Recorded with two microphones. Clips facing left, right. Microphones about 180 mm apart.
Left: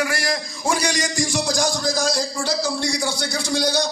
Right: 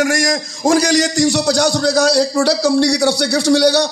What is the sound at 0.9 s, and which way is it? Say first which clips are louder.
A man's voice: right 9 dB; 70° right (ahead or behind).